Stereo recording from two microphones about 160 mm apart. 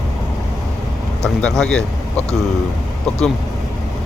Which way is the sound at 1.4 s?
5° left (ahead or behind).